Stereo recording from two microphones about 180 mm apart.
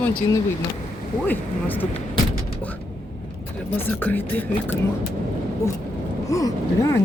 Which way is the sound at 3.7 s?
10° left (ahead or behind).